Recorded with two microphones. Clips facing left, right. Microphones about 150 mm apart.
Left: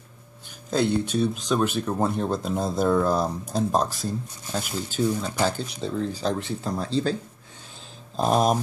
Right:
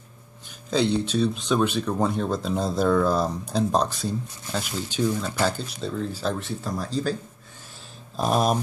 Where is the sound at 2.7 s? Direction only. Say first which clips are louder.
Even; 20° left (ahead or behind).